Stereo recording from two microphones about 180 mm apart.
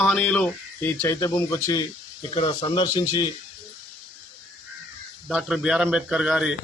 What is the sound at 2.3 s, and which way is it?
Speech, 25° left (ahead or behind).